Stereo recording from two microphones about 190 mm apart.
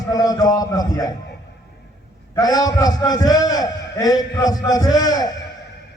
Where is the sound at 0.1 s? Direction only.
20° left (ahead or behind).